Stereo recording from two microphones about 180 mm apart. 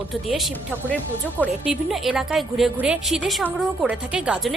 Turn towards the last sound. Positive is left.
turn(degrees=-5)  # may be behind; listen again after turning